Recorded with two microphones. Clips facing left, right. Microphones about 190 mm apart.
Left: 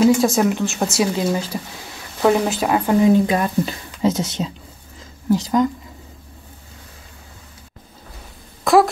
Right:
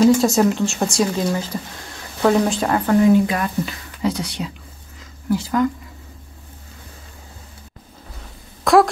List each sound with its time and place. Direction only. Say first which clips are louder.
0.0 s speech: right 1 dB; centre (ahead or behind)
2.9 s speech: even; 20° left (ahead or behind)
8.7 s wail: even; centre (ahead or behind)